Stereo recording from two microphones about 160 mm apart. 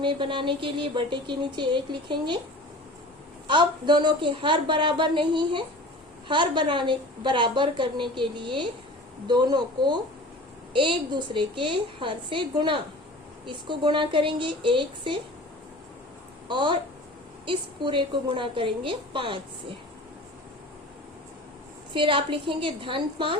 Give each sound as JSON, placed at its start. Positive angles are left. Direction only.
{"t": 0.0, "sound": "speech", "side_deg": -30}
{"t": 3.4, "sound": "a woman's voice", "side_deg": -30}
{"t": 16.5, "sound": "a woman's voice", "side_deg": -30}
{"t": 21.9, "sound": "a woman's voice", "side_deg": -30}